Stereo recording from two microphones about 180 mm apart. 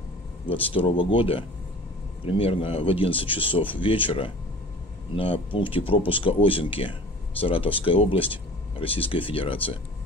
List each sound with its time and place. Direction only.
0.5 s speech: 30° left (ahead or behind)